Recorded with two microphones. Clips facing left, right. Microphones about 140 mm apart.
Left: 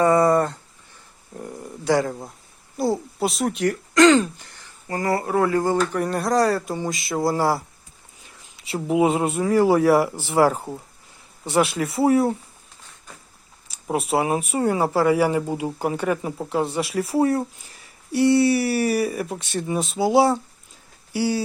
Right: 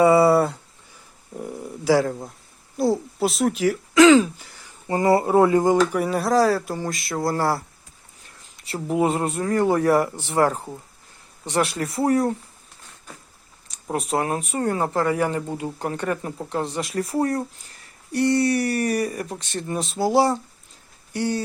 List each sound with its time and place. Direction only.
0.0 s a sound: 10° right (ahead or behind)
2.7 s speech: centre (ahead or behind)
4.9 s speech: 25° right (ahead or behind)
5.9 s speech: 5° right (ahead or behind)
13.7 s speech: 5° left (ahead or behind)